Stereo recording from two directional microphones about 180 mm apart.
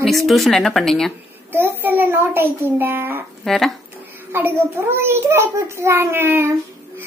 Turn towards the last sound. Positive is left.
turn(degrees=-15)  # may be behind; listen again after turning